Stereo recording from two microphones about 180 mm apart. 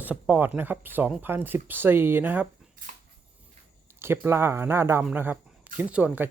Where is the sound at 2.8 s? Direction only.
50° right (ahead or behind).